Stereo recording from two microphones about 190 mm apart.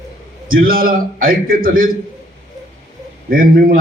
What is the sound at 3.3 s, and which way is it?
Speech, 50° right (ahead or behind).